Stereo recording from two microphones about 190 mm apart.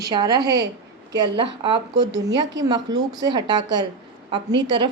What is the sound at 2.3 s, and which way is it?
Speech, 20° right (ahead or behind).